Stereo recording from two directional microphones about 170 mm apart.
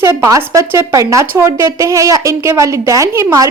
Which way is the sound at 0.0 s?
15° right (ahead or behind).